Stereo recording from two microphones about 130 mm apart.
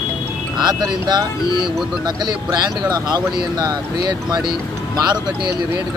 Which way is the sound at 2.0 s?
35° right (ahead or behind).